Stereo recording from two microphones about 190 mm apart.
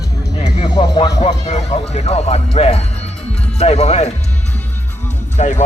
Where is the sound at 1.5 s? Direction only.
35° left (ahead or behind).